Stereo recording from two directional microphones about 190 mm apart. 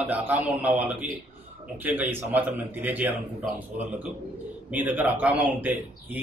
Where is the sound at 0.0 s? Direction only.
10° right (ahead or behind).